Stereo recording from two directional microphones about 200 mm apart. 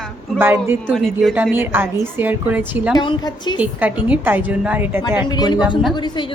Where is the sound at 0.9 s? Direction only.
Centre (ahead or behind).